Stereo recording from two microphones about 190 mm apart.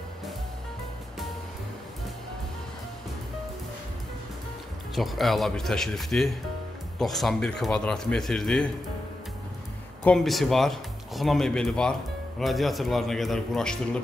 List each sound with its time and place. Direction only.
4.9 s speech: centre (ahead or behind)
10.0 s speech: centre (ahead or behind)